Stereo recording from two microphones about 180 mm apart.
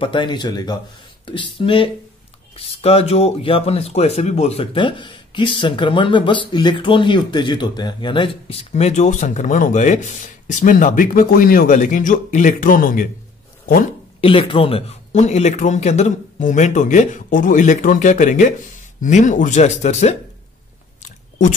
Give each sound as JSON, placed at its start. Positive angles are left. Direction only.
{"t": 0.0, "sound": "speech", "side_deg": 25}
{"t": 14.2, "sound": "speech", "side_deg": 30}
{"t": 21.0, "sound": "chewing", "side_deg": 45}